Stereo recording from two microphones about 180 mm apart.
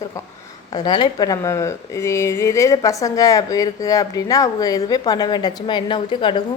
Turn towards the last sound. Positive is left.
turn(degrees=25)  # may be behind; listen again after turning